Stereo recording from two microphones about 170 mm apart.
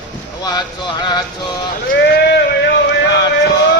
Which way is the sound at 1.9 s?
70° left (ahead or behind).